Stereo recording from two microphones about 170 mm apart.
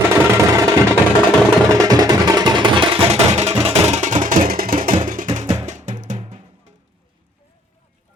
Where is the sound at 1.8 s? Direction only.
20° right (ahead or behind); by 5.3 s 55° right (ahead or behind).